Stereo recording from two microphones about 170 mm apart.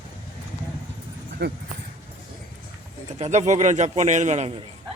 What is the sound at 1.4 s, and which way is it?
Speech, 85° right.